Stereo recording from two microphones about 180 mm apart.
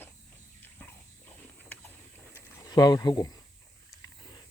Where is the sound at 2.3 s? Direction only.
15° left (ahead or behind).